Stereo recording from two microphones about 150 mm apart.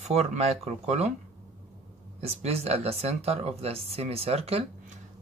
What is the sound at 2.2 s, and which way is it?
Speech, 45° right (ahead or behind).